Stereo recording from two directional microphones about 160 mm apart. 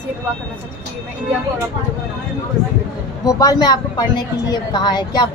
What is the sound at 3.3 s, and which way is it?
Speech, 20° left (ahead or behind).